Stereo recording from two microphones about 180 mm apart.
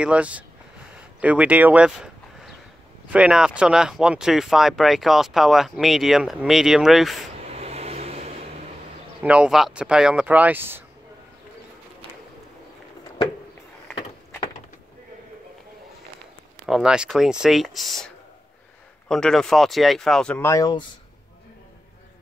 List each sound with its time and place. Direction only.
0.0 s speech: 5° right (ahead or behind)
7.4 s vehicle: 35° right (ahead or behind)
9.2 s speech: 5° right (ahead or behind)
16.6 s speech: 5° right (ahead or behind); by 20.9 s 25° left (ahead or behind)